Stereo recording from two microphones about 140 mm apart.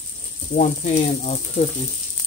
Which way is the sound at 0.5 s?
55° left (ahead or behind).